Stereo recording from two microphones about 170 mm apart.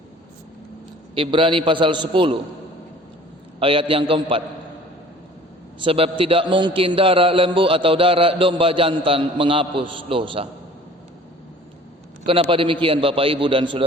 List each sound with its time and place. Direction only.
1.1 s a man's voice: 30° right (ahead or behind)
3.6 s a man's voice: 30° right (ahead or behind)
5.8 s a man's voice: 30° right (ahead or behind)
12.2 s a man's voice: 30° right (ahead or behind)